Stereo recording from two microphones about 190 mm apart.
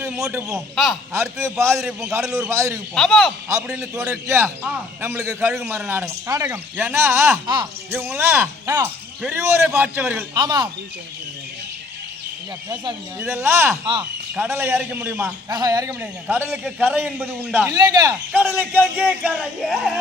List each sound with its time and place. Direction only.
0.0 s a man's voice: 10° right (ahead or behind)
1.8 s speech: centre (ahead or behind)
2.0 s a man's voice: 15° right (ahead or behind)
2.9 s speech: centre (ahead or behind)
3.9 s a man's voice: 15° right (ahead or behind)
10.3 s speech: 20° right (ahead or behind)
13.1 s a man's voice: 15° right (ahead or behind)
15.4 s a man's voice: 20° right (ahead or behind)
17.7 s speech: 20° right (ahead or behind)
18.3 s speech: 5° right (ahead or behind)